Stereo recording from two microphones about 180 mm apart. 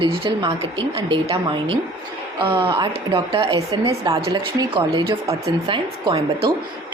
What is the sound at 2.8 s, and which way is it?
Speech, 25° right (ahead or behind).